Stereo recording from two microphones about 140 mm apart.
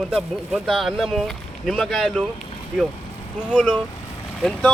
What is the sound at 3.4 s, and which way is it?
Speech, 10° left (ahead or behind).